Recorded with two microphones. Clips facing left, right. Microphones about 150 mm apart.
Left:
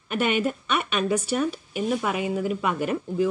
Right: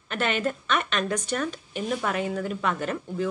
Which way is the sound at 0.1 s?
10° left (ahead or behind).